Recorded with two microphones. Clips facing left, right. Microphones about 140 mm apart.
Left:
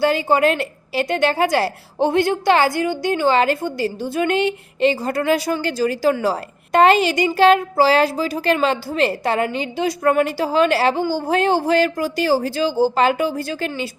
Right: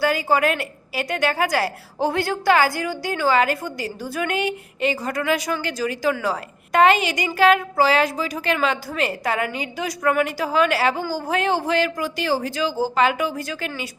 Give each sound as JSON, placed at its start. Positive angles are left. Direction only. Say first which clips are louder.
{"t": 0.0, "sound": "a woman's voice", "louder": "left 3 dB", "side_deg": 25}